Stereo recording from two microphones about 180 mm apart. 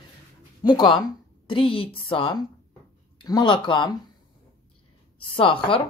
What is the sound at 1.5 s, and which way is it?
Speech, 30° left (ahead or behind).